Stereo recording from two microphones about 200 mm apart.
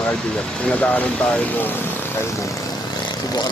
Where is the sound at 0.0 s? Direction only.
5° left (ahead or behind).